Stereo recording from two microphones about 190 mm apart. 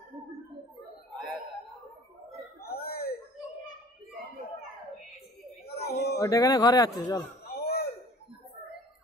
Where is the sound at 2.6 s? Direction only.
55° left (ahead or behind).